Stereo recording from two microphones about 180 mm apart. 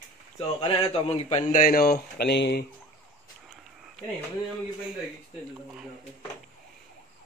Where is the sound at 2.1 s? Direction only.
70° left (ahead or behind).